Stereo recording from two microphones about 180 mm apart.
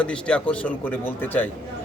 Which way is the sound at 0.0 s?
5° left (ahead or behind).